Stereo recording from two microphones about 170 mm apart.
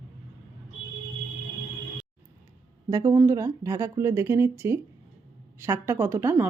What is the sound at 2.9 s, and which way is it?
Speech, 20° right (ahead or behind).